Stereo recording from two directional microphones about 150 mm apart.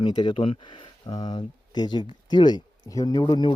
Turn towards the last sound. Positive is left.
turn(degrees=30)  # may be behind; listen again after turning